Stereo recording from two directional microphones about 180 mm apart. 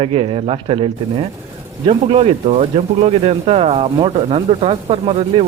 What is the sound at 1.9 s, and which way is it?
Speech, 35° right (ahead or behind).